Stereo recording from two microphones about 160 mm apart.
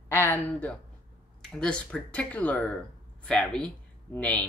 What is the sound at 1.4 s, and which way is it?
Speech, 5° left (ahead or behind).